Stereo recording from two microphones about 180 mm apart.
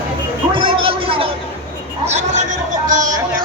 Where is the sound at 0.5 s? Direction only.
30° right (ahead or behind).